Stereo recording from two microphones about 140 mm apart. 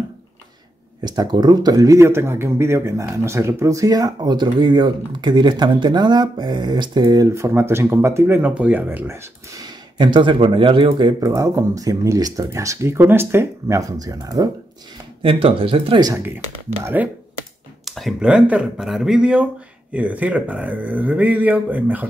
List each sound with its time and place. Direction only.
1.0 s speech: 30° right (ahead or behind)
7.2 s speech: 20° right (ahead or behind)
15.2 s speech: 40° right (ahead or behind)
16.8 s speech: 10° right (ahead or behind)
17.8 s speech: centre (ahead or behind)